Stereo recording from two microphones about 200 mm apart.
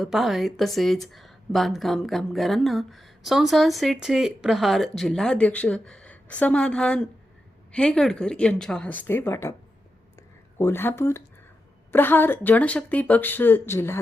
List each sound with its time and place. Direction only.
0.0 s a woman's voice: centre (ahead or behind)
10.2 s a sound: 10° left (ahead or behind)
11.9 s speech: 10° left (ahead or behind)